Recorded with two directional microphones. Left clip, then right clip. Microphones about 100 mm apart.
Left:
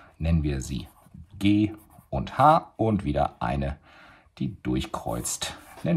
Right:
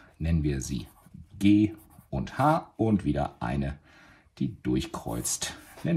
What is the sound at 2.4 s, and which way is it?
Speech, 30° left (ahead or behind).